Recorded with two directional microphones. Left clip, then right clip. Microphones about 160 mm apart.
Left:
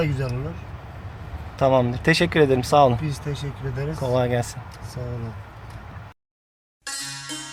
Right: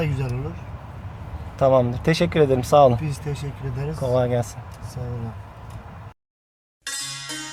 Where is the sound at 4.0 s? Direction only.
Centre (ahead or behind).